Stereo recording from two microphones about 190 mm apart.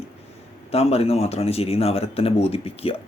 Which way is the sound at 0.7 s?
30° left (ahead or behind).